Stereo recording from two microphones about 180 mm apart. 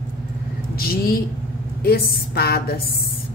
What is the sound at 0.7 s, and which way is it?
A woman's voice, 55° left (ahead or behind).